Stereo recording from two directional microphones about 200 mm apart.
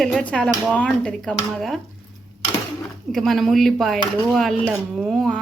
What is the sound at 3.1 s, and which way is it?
Speech, centre (ahead or behind).